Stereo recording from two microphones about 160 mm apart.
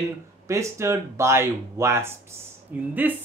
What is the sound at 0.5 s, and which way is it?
Speech, 20° right (ahead or behind).